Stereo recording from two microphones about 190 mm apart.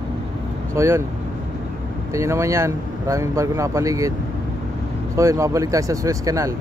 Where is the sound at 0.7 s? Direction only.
15° right (ahead or behind).